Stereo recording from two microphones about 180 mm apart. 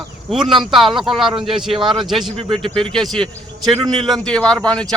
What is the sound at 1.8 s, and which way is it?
Speech, 25° right (ahead or behind).